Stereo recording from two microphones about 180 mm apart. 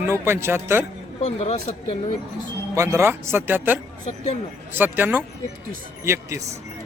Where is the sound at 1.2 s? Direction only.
40° left (ahead or behind).